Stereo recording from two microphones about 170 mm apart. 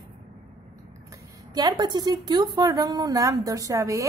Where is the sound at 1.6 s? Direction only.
25° right (ahead or behind).